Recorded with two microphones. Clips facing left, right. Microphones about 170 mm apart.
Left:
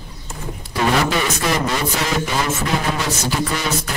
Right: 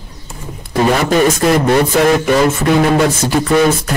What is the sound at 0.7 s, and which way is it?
A man's voice, 45° right (ahead or behind).